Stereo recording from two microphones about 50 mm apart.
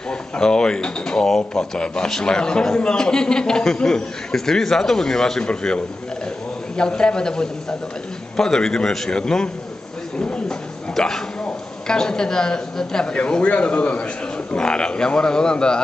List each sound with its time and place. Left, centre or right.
0.1 s a man's voice: centre
6.8 s a man's voice: centre
11.0 s a man's voice: centre